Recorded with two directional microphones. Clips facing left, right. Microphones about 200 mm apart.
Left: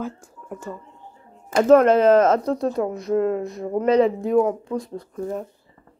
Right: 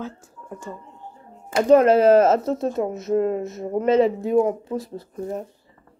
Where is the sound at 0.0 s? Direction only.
10° left (ahead or behind).